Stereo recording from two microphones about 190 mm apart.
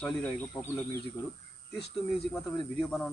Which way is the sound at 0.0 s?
10° left (ahead or behind).